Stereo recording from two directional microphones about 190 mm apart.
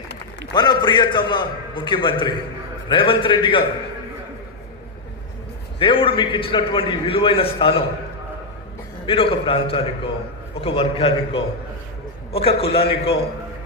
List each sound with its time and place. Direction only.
0.5 s a man's voice: 20° left (ahead or behind)
5.8 s a man's voice: 30° left (ahead or behind)
9.0 s a man's voice: 30° left (ahead or behind)